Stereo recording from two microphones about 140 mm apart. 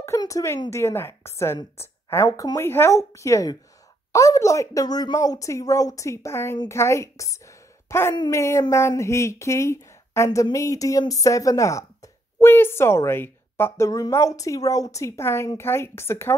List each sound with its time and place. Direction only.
0.0 s a woman's voice: 20° left (ahead or behind)